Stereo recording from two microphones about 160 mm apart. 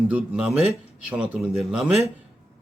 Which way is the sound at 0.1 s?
10° right (ahead or behind).